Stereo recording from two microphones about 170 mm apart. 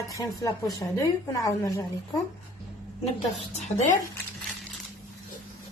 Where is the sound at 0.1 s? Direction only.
20° left (ahead or behind).